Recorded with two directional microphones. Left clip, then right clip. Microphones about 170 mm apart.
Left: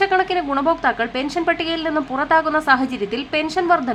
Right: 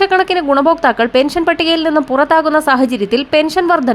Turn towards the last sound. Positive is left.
turn(degrees=-35)  # may be behind; listen again after turning